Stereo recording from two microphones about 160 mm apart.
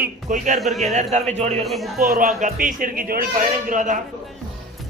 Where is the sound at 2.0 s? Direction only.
65° right (ahead or behind).